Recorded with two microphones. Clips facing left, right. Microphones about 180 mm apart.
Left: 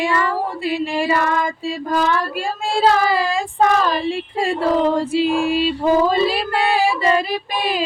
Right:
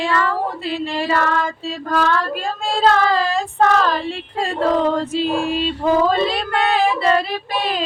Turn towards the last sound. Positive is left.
turn(degrees=10)  # may be behind; listen again after turning